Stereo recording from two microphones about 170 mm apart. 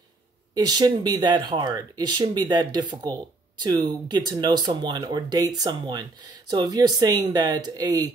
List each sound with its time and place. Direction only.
0.6 s speech: 25° right (ahead or behind)